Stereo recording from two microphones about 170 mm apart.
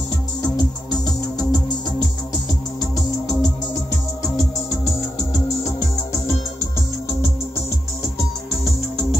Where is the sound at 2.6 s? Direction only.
20° left (ahead or behind).